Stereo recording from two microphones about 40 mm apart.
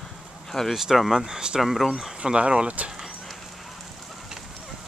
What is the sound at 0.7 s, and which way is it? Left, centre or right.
Speech, centre.